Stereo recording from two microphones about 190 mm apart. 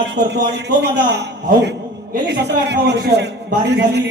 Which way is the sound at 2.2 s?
65° right (ahead or behind).